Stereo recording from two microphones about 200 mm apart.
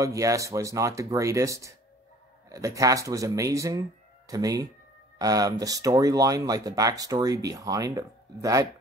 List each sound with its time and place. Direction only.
0.0 s speech: 15° right (ahead or behind)